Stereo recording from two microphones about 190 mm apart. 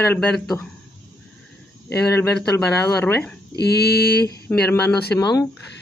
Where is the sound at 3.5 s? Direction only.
60° left (ahead or behind).